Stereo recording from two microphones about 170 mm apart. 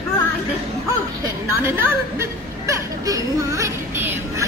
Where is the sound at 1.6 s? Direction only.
15° right (ahead or behind).